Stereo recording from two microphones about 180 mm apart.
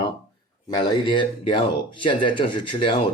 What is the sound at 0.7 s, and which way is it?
Speech, 25° left (ahead or behind).